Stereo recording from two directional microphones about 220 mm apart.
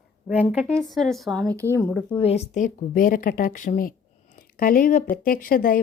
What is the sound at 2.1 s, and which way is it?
Speech, 25° left (ahead or behind).